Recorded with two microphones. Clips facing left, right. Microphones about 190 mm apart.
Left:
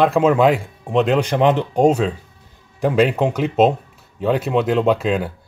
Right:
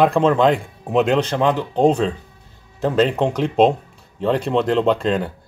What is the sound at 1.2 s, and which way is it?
Speech, 15° left (ahead or behind).